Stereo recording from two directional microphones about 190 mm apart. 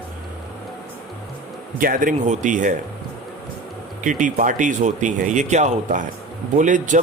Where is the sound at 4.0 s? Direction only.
40° right (ahead or behind).